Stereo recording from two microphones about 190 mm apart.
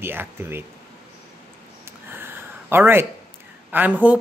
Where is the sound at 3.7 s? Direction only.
10° right (ahead or behind).